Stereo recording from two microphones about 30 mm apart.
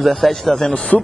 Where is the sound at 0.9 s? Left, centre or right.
Left.